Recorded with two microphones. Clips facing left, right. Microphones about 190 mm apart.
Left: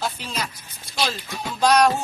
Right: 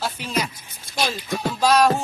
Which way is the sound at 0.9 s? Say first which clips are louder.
Right 2 dB; 50° right (ahead or behind).